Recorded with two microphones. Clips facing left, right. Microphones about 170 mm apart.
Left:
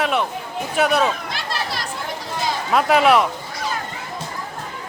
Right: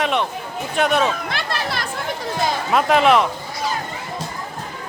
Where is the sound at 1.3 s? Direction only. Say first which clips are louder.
Right 2 dB; 60° right (ahead or behind).